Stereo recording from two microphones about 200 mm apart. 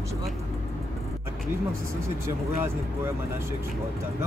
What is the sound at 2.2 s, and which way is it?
Speech, 15° right (ahead or behind).